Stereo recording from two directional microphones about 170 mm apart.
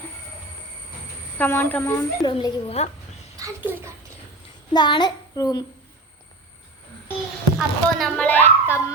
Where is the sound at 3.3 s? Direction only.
15° right (ahead or behind).